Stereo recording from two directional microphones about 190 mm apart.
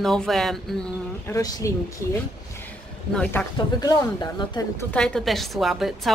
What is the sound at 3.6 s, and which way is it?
Speech, 20° left (ahead or behind).